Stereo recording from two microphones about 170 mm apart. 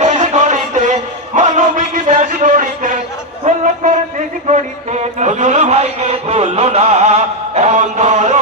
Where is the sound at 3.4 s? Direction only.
45° right (ahead or behind).